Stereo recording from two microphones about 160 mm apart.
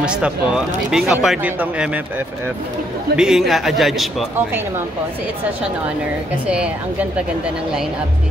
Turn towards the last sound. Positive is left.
turn(degrees=-5)  # may be behind; listen again after turning